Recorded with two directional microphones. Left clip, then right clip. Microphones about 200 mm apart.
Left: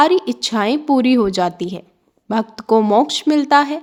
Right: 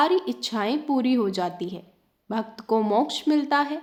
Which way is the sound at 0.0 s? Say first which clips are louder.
Left 8 dB; 40° left (ahead or behind).